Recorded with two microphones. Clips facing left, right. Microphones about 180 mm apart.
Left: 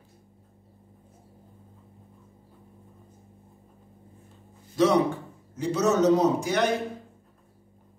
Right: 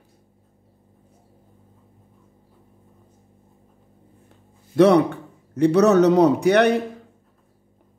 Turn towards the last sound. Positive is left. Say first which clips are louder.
# right 8 dB
turn(degrees=-65)  # may be behind; listen again after turning